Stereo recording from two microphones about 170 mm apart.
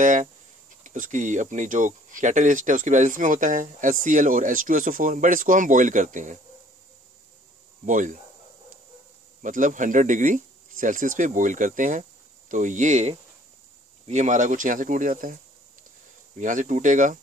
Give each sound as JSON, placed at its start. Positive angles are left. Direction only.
{"t": 0.0, "sound": "speech", "side_deg": -50}
{"t": 7.8, "sound": "speech", "side_deg": -50}
{"t": 9.4, "sound": "speech", "side_deg": -50}
{"t": 16.3, "sound": "speech", "side_deg": -50}